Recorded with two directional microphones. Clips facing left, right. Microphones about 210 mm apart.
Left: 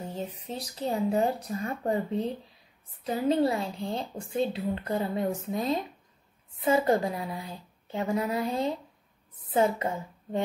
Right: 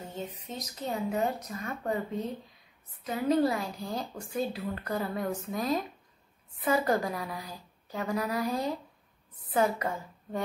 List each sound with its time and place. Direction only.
0.1 s a woman's voice: 35° left (ahead or behind)